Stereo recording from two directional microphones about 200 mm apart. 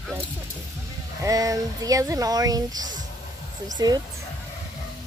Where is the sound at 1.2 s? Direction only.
15° right (ahead or behind).